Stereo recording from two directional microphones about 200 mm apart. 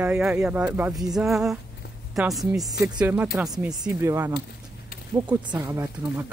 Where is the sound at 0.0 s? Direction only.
5° right (ahead or behind).